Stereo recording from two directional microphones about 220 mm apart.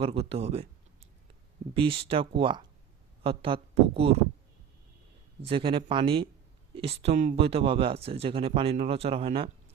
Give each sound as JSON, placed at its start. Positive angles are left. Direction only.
{"t": 0.0, "sound": "speech", "side_deg": -25}
{"t": 1.7, "sound": "speech", "side_deg": -25}
{"t": 5.4, "sound": "speech", "side_deg": -25}